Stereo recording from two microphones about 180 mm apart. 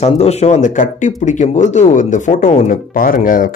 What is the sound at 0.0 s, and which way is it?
Speech, 35° left (ahead or behind).